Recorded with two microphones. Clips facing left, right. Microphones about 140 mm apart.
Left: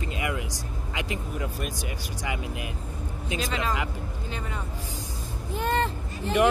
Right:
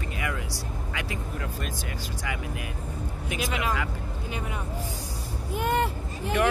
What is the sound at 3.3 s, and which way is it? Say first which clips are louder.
Speech: even; 15° right (ahead or behind).